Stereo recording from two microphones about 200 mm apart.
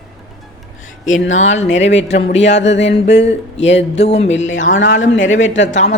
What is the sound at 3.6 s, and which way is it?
Speech, 35° left (ahead or behind).